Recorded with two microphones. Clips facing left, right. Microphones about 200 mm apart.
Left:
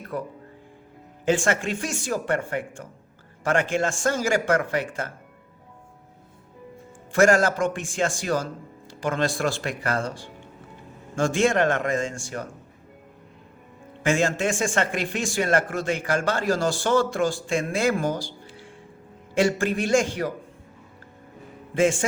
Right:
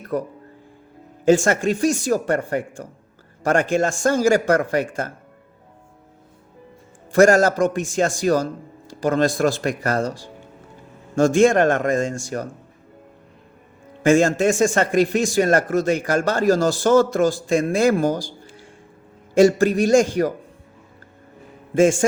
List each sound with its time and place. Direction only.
0.1 s a man's voice: 40° right (ahead or behind)
7.1 s a man's voice: 40° right (ahead or behind)
14.0 s speech: 45° right (ahead or behind)
21.8 s a man's voice: 45° right (ahead or behind)